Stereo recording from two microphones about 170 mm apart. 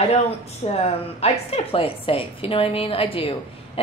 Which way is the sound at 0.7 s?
35° left (ahead or behind).